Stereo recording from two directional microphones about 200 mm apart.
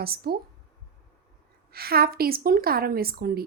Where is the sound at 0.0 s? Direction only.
50° right (ahead or behind).